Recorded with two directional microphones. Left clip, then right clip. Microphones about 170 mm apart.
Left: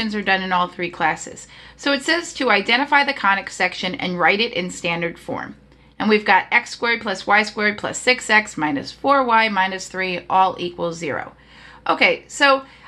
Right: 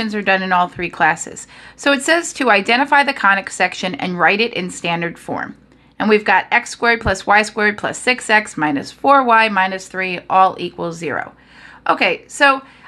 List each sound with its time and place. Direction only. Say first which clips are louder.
0.0 s a woman's voice: right 3 dB; 25° right (ahead or behind)